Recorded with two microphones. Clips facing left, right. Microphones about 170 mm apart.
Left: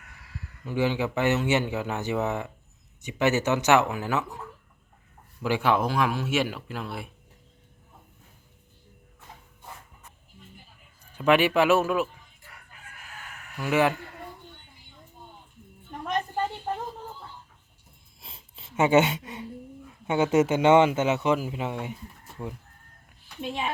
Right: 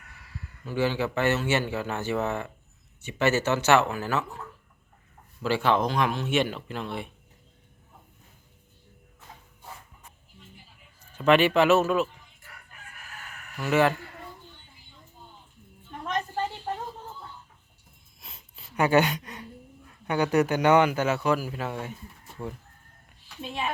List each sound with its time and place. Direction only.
0.6 s a man's voice: 15° left (ahead or behind)
11.0 s speech: 10° left (ahead or behind)
13.6 s a man's voice: 10° left (ahead or behind)
18.2 s a sound: 30° left (ahead or behind)
20.1 s a man's voice: 20° left (ahead or behind)
22.4 s speech: 5° left (ahead or behind)